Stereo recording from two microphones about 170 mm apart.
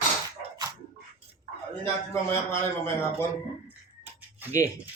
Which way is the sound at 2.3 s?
15° left (ahead or behind).